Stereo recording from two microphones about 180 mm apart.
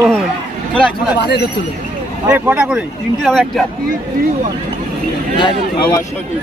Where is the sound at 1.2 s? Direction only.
65° left (ahead or behind).